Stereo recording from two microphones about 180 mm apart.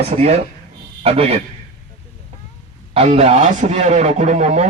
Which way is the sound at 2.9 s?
35° right (ahead or behind).